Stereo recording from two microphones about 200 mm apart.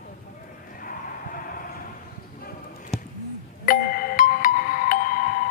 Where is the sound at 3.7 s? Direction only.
45° left (ahead or behind).